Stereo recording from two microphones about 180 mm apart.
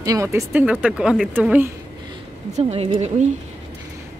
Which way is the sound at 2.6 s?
35° right (ahead or behind).